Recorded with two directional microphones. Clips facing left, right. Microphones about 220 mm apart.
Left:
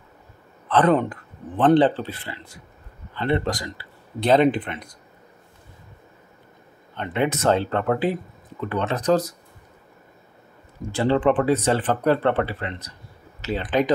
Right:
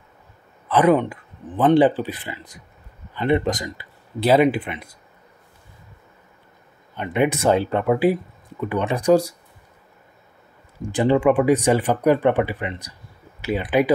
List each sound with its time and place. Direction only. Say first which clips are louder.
0.7 s speech: right 2 dB; 10° right (ahead or behind)
4.2 s speech: right 1 dB; 10° right (ahead or behind)
7.0 s speech: right 3 dB; 15° right (ahead or behind)
10.9 s speech: right 2 dB; 15° right (ahead or behind)